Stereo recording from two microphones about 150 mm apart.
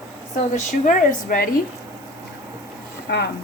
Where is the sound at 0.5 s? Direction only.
65° left (ahead or behind).